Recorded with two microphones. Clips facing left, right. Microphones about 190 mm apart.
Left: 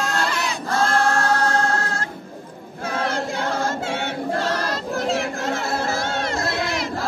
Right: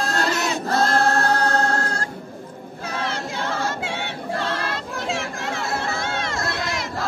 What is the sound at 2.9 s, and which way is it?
Choir, 50° left (ahead or behind).